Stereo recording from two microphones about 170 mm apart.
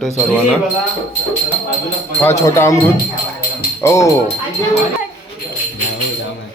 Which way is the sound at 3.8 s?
15° left (ahead or behind).